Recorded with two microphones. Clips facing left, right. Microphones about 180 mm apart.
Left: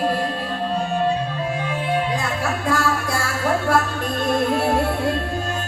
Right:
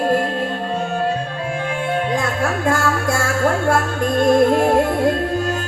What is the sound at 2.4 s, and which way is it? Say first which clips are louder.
Music: right 2 dB; 50° right (ahead or behind).